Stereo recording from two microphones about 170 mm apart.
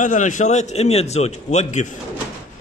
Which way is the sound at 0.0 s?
45° left (ahead or behind).